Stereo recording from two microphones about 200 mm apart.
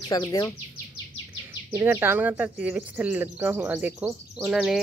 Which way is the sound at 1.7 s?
10° right (ahead or behind).